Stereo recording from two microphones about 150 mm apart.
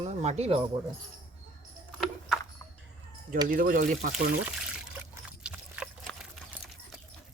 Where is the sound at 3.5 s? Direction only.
70° right (ahead or behind).